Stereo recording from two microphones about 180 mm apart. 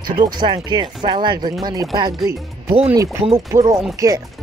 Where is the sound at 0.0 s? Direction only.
25° right (ahead or behind).